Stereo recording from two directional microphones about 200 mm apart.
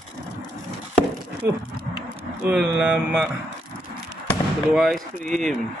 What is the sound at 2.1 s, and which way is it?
Speech, 10° right (ahead or behind).